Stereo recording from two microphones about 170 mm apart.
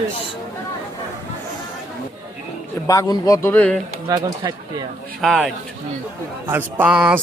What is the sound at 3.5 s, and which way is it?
Speech, 10° left (ahead or behind).